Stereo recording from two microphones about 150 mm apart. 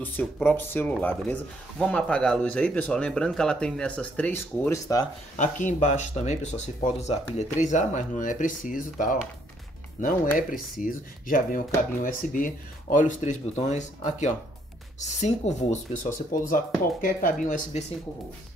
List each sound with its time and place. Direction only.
0.0 s speech: 10° left (ahead or behind)
5.3 s speech: 55° left (ahead or behind)